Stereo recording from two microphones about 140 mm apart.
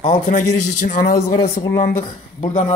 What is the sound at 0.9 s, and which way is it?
Speech, 90° left.